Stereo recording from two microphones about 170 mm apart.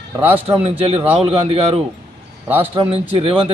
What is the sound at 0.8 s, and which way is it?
A man's voice, 35° right (ahead or behind).